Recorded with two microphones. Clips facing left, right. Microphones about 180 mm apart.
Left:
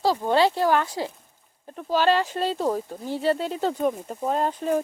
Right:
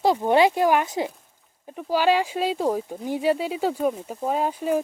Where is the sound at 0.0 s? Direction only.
20° right (ahead or behind).